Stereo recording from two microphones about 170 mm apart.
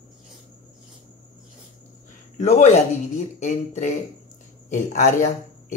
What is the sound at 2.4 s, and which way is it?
A man's voice, 40° left (ahead or behind).